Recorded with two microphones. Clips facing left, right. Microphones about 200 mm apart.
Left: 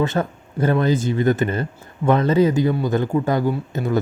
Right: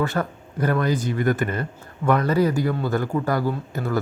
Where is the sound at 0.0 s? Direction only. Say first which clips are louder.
Left 3 dB; 20° left (ahead or behind).